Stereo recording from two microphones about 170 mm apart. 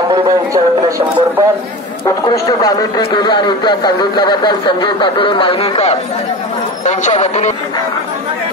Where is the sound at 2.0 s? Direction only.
20° left (ahead or behind); by 7.5 s 45° left (ahead or behind).